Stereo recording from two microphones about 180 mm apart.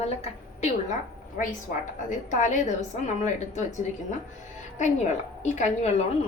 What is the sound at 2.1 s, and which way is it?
A woman's voice, 45° left (ahead or behind).